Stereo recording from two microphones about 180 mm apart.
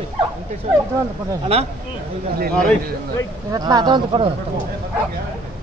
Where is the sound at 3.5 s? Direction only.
20° right (ahead or behind).